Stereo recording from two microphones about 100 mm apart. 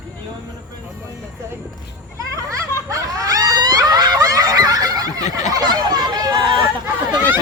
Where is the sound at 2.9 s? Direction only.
35° right (ahead or behind).